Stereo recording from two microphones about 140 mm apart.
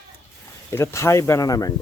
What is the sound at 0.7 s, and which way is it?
Speech, 20° left (ahead or behind).